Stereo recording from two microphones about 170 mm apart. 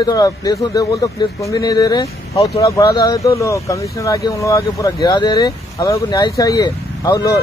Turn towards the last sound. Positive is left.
turn(degrees=25)  # may be behind; listen again after turning